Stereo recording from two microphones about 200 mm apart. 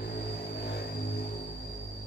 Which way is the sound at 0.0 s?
55° left (ahead or behind).